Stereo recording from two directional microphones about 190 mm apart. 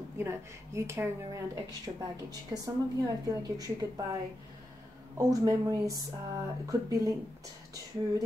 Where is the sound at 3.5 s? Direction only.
20° right (ahead or behind).